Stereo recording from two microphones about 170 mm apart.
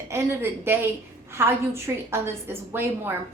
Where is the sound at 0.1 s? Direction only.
15° right (ahead or behind).